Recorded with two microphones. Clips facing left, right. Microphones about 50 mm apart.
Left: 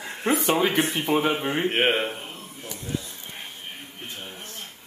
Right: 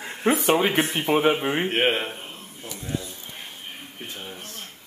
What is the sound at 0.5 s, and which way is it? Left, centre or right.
Speech, centre.